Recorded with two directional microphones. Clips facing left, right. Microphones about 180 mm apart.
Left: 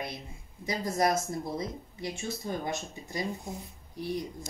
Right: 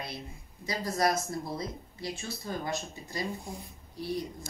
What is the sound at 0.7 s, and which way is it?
Speech, 20° left (ahead or behind).